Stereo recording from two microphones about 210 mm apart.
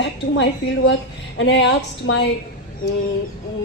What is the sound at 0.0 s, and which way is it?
A woman's voice, 55° left (ahead or behind).